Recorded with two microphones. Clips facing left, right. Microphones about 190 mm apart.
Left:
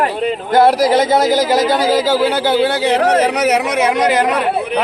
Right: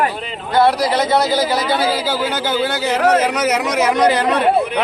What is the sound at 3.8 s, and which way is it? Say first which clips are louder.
Speech: left 1 dB; 20° left (ahead or behind).